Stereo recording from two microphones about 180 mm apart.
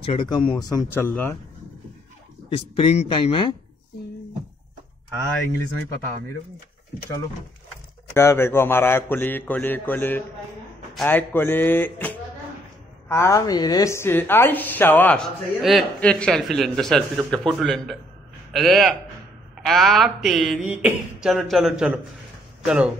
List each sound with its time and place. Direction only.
0.0 s speech: 30° left (ahead or behind); by 1.3 s 10° left (ahead or behind)
2.5 s speech: 30° left (ahead or behind)
8.1 s speech: 15° left (ahead or behind)
17.5 s a sound: centre (ahead or behind)